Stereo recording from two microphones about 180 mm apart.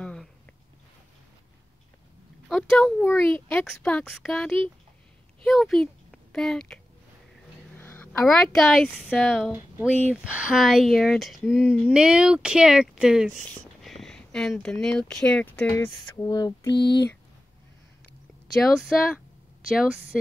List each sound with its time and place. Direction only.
0.0 s a sound: 5° left (ahead or behind)
2.4 s a child's voice: centre (ahead or behind); by 16.7 s 20° left (ahead or behind)
16.7 s speech: 70° left (ahead or behind)
18.5 s speech: centre (ahead or behind)